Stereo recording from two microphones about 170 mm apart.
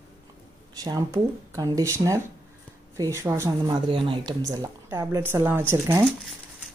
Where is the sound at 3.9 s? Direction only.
30° right (ahead or behind); by 6.0 s 15° right (ahead or behind).